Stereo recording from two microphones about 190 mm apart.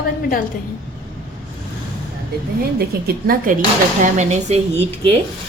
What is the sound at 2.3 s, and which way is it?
A woman's voice, 55° right (ahead or behind).